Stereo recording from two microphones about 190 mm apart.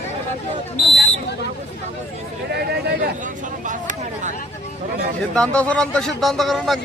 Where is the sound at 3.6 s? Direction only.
40° right (ahead or behind).